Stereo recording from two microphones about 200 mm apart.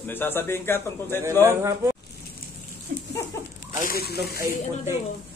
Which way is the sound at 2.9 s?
45° right (ahead or behind).